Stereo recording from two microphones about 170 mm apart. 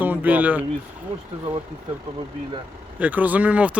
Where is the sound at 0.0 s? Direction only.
10° right (ahead or behind).